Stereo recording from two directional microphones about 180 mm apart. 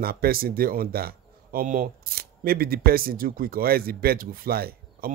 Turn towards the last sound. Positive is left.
turn(degrees=-55)  # may be behind; listen again after turning